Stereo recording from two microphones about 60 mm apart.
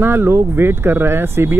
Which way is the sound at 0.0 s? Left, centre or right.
Right.